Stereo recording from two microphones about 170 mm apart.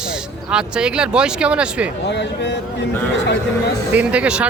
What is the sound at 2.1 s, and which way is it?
Speech, 90° left.